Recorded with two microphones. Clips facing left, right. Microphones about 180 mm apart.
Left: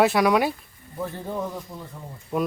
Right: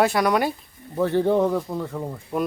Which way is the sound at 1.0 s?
75° right (ahead or behind).